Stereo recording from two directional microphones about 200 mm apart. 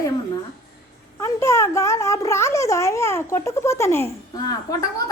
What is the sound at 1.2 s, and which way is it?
A woman's voice, 15° left (ahead or behind).